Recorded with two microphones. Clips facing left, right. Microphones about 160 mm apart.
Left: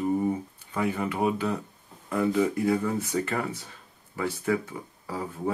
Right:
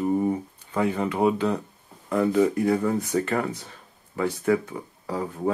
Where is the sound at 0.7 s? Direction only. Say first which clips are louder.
Right 4 dB; 30° right (ahead or behind).